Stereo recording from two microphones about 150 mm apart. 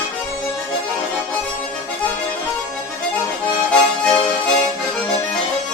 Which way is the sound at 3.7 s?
5° left (ahead or behind).